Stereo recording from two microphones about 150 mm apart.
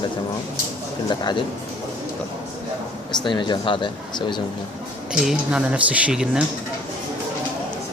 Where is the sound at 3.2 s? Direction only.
30° left (ahead or behind).